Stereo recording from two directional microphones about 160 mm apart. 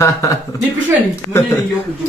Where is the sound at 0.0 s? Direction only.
20° left (ahead or behind).